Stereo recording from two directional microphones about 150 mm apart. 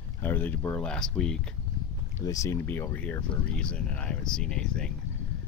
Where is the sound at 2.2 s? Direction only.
20° left (ahead or behind).